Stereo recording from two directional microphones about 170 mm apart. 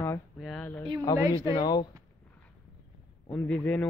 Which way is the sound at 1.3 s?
20° right (ahead or behind).